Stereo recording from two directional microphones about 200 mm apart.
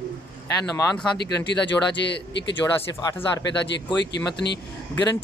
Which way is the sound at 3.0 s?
20° left (ahead or behind).